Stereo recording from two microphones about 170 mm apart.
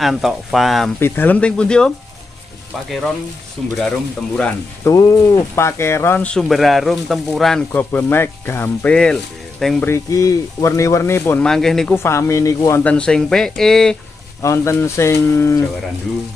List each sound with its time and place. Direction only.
0.0 s speech: centre (ahead or behind)
0.9 s speech: 10° left (ahead or behind)
3.6 s speech: 5° left (ahead or behind)
4.9 s speech: 20° left (ahead or behind); by 9.8 s 5° left (ahead or behind)
9.8 s speech: 20° left (ahead or behind)
11.4 s speech: centre (ahead or behind)
11.9 s speech: 15° left (ahead or behind)
12.8 s speech: 5° left (ahead or behind)
14.4 s speech: 15° left (ahead or behind)